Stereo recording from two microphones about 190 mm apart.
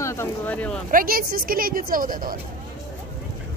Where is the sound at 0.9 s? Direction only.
50° right (ahead or behind).